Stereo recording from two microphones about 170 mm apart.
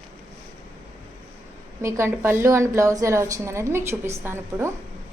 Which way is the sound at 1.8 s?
15° right (ahead or behind).